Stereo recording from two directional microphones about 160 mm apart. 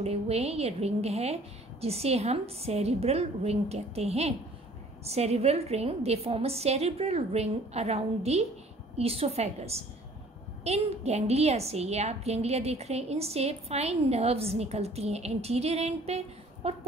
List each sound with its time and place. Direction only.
0.0 s a woman's voice: 40° right (ahead or behind)